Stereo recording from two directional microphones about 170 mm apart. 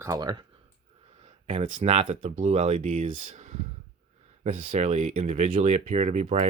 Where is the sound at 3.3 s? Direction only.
45° right (ahead or behind).